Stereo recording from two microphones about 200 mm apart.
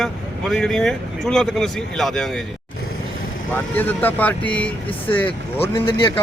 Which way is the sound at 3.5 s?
10° left (ahead or behind).